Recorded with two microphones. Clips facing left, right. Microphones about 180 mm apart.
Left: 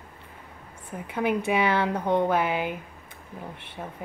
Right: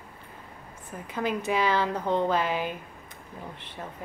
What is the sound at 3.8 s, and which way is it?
Speech, 10° left (ahead or behind).